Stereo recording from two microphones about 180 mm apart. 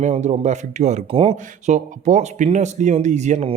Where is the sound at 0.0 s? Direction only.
40° right (ahead or behind).